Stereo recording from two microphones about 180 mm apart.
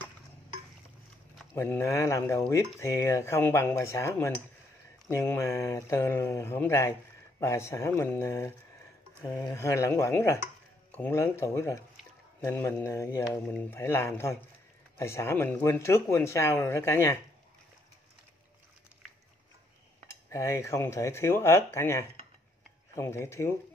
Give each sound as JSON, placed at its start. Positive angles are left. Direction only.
{"t": 1.5, "sound": "speech", "side_deg": 15}
{"t": 20.2, "sound": "speech", "side_deg": 15}